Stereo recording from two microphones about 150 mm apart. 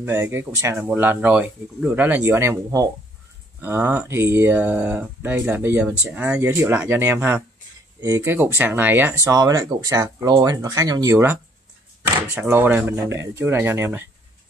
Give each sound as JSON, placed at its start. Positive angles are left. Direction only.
{"t": 0.0, "sound": "speech", "side_deg": -15}
{"t": 12.4, "sound": "speech", "side_deg": -15}